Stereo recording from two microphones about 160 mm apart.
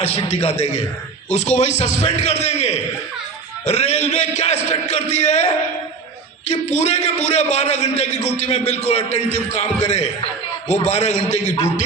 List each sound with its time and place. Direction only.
0.0 s a man's voice: 40° left (ahead or behind)
2.5 s a sound: 45° left (ahead or behind)
3.7 s a man's voice: 45° left (ahead or behind)
6.5 s a man's voice: 45° left (ahead or behind)